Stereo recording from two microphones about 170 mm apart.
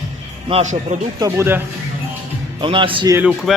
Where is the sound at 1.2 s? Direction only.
15° right (ahead or behind).